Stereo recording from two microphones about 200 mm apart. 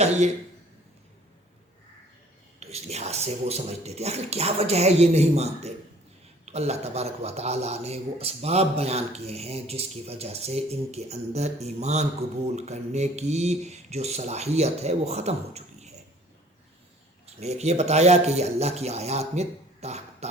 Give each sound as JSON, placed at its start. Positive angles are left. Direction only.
{"t": 2.6, "sound": "a man's voice", "side_deg": -30}
{"t": 17.2, "sound": "speech", "side_deg": -35}